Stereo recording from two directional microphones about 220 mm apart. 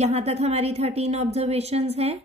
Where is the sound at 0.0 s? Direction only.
30° right (ahead or behind).